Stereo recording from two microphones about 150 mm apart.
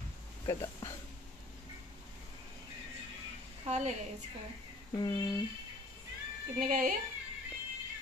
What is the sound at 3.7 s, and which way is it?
Speech, 50° right (ahead or behind).